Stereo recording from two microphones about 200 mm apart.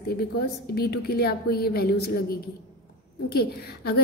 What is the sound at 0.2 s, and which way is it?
A woman's voice, 50° left (ahead or behind).